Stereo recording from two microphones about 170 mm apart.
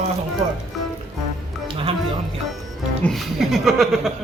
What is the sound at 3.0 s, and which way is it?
Speech, centre (ahead or behind).